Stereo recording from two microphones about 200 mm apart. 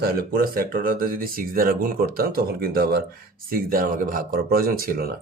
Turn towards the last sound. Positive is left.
turn(degrees=-45)  # may be behind; listen again after turning